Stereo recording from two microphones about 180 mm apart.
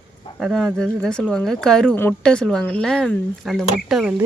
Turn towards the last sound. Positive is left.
turn(degrees=0)  # may be behind; listen again after turning